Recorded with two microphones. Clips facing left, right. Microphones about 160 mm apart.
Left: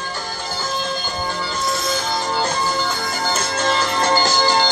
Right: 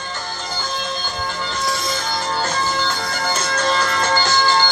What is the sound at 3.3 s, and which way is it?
Music, 25° left (ahead or behind).